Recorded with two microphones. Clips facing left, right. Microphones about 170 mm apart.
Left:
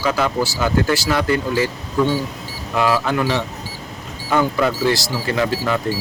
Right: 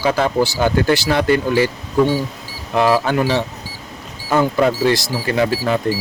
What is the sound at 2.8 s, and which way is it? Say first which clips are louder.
Speech: right 3 dB; 35° right (ahead or behind).